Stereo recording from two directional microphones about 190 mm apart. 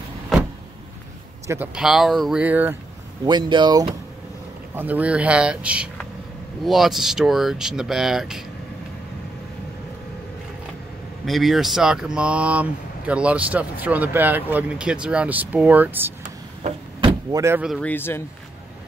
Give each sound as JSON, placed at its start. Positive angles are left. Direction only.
{"t": 1.5, "sound": "speech", "side_deg": -5}
{"t": 3.3, "sound": "speech", "side_deg": -25}
{"t": 4.7, "sound": "speech", "side_deg": -10}
{"t": 11.2, "sound": "speech", "side_deg": 0}
{"t": 17.3, "sound": "speech", "side_deg": -15}
{"t": 17.6, "sound": "a man's voice", "side_deg": 5}